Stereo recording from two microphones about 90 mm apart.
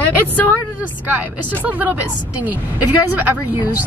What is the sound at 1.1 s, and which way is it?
A woman's voice, 20° right (ahead or behind).